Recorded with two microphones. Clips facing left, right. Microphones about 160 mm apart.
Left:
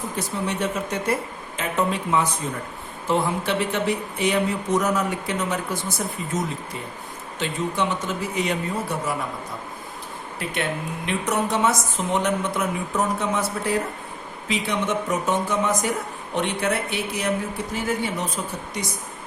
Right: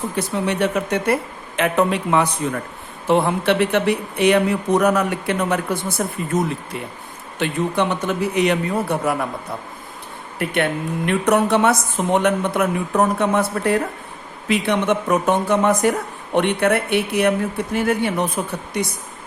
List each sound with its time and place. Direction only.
0.4 s a woman's voice: 65° right (ahead or behind)
10.3 s a woman's voice: 60° right (ahead or behind)